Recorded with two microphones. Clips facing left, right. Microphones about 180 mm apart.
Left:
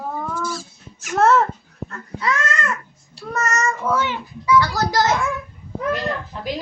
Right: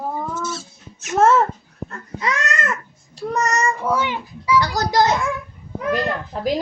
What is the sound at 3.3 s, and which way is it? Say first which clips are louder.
A child's voice: right 1 dB; 15° right (ahead or behind).